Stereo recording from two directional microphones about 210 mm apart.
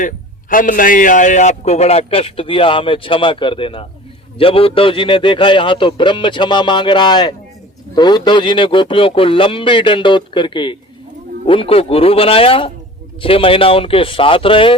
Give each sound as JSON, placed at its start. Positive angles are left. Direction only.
{"t": 0.5, "sound": "a man's voice", "side_deg": 40}